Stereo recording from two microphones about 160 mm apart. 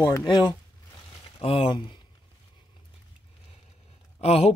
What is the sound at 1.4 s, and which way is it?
Speech, 35° left (ahead or behind).